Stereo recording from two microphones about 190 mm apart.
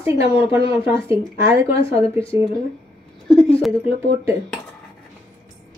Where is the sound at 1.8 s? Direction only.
30° left (ahead or behind).